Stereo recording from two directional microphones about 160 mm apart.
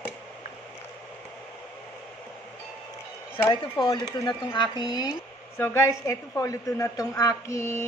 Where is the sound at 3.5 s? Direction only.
25° left (ahead or behind).